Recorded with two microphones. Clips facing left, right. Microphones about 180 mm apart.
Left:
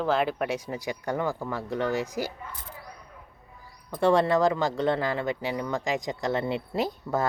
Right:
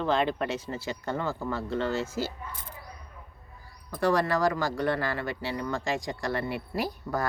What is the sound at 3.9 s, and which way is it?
Speech, 25° left (ahead or behind).